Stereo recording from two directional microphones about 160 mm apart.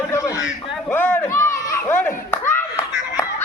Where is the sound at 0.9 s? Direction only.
10° left (ahead or behind).